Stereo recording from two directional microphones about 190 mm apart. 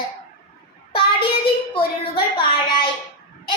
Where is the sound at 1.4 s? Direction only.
25° left (ahead or behind).